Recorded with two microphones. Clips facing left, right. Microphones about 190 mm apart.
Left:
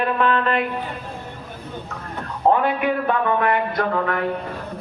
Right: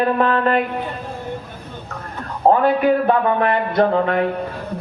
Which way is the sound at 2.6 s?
35° right (ahead or behind).